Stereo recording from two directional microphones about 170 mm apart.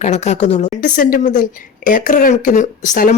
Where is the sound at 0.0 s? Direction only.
40° left (ahead or behind).